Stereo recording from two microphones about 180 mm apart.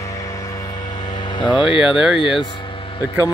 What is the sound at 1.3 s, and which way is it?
Speech, 25° left (ahead or behind).